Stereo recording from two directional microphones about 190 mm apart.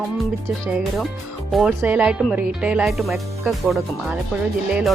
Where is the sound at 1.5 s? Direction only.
Centre (ahead or behind).